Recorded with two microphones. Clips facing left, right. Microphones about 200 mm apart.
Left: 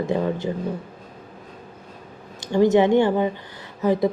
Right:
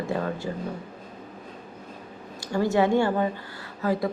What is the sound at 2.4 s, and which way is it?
A man's voice, 20° left (ahead or behind).